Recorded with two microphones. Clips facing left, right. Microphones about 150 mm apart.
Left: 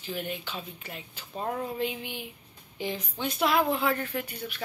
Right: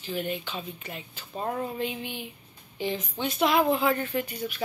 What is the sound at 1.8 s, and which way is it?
Speech, 10° left (ahead or behind).